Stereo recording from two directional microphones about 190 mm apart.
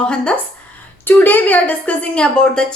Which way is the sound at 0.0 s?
5° left (ahead or behind).